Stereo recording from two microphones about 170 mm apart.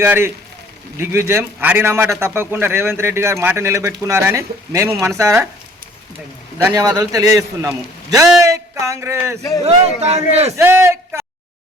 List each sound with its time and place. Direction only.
0.0 s a man's voice: 15° right (ahead or behind)
6.6 s a man's voice: 20° right (ahead or behind)
10.0 s a man's voice: 40° right (ahead or behind)
10.6 s a man's voice: 15° right (ahead or behind)